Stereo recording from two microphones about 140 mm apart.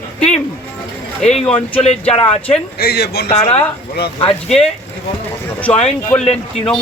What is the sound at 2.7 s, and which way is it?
Speech, 90° left.